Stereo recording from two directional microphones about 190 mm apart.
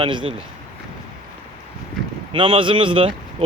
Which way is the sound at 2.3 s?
30° right (ahead or behind).